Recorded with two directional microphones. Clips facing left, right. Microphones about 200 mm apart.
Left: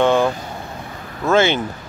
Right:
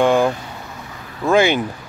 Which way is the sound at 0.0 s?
10° right (ahead or behind).